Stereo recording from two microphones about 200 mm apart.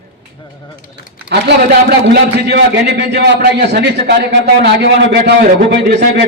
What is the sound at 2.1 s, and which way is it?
A man's voice, 55° right (ahead or behind).